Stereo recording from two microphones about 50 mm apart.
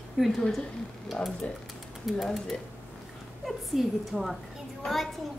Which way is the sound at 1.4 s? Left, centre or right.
Left.